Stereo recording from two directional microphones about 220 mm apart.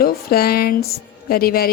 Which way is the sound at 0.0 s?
45° left (ahead or behind).